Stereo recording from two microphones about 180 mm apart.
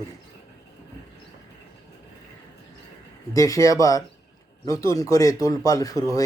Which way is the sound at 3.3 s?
20° left (ahead or behind).